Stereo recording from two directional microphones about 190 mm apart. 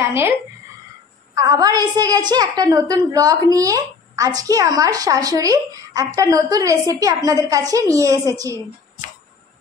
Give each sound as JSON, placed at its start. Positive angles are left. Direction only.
{"t": 0.0, "sound": "a woman's voice", "side_deg": -15}
{"t": 1.3, "sound": "a woman's voice", "side_deg": -20}